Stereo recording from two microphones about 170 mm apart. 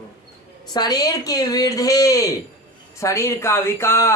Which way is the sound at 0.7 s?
25° left (ahead or behind).